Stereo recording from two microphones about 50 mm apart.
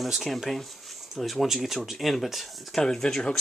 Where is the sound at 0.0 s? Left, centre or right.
Centre.